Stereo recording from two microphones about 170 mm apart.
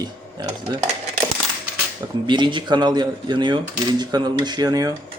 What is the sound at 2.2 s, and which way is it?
Speech, 30° right (ahead or behind).